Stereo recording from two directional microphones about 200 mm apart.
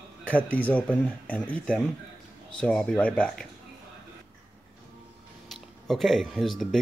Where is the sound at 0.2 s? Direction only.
10° left (ahead or behind).